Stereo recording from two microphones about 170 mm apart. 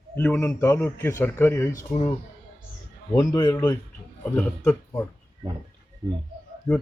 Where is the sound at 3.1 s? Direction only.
20° left (ahead or behind).